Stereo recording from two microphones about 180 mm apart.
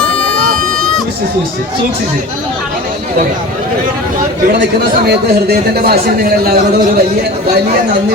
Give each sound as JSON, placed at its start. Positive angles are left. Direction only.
{"t": 5.0, "sound": "a man's voice", "side_deg": -60}